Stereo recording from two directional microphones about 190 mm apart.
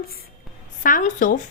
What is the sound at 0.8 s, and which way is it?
Speech, 45° left (ahead or behind).